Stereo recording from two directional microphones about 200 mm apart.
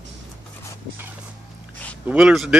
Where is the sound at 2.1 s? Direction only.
5° right (ahead or behind).